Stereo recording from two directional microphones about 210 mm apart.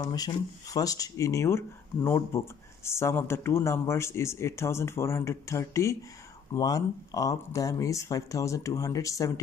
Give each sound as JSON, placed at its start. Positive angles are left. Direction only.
{"t": 0.0, "sound": "speech", "side_deg": 20}